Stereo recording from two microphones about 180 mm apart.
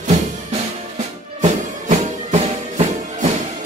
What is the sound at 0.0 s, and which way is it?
Music, 40° right (ahead or behind).